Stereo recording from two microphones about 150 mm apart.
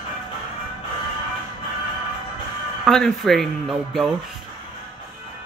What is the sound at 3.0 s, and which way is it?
Speech, centre (ahead or behind).